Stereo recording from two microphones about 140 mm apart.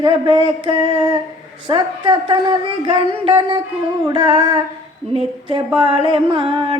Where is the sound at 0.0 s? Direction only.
35° right (ahead or behind).